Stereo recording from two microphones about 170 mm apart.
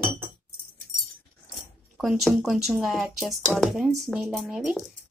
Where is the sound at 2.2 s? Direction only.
Centre (ahead or behind).